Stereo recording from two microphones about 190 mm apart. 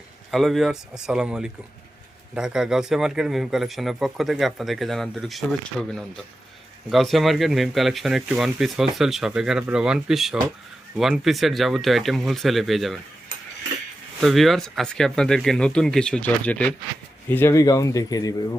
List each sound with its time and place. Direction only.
0.3 s speech: centre (ahead or behind)
14.2 s speech: centre (ahead or behind); by 18.3 s 20° left (ahead or behind)